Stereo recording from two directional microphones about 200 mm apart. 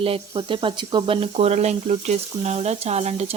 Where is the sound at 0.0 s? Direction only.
25° right (ahead or behind).